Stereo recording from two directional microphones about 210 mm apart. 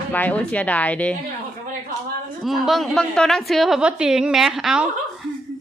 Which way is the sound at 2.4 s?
Centre (ahead or behind).